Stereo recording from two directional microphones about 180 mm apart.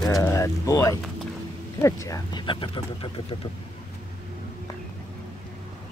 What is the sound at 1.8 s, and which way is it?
Speech, 20° left (ahead or behind).